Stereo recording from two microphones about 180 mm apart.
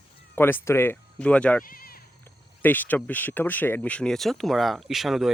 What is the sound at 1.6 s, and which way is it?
Bleat, 55° left (ahead or behind).